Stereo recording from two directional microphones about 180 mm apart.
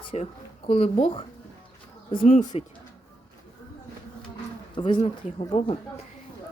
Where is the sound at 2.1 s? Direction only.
50° left (ahead or behind).